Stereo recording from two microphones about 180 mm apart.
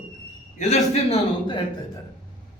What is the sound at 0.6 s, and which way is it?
A man's voice, 40° left (ahead or behind).